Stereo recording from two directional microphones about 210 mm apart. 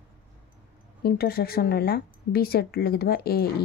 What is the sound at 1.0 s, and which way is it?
A woman's voice, 45° left (ahead or behind).